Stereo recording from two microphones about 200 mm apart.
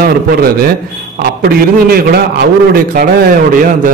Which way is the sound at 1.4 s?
50° right (ahead or behind).